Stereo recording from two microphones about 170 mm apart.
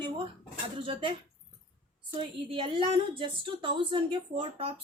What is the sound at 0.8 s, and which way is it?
Speech, 30° right (ahead or behind).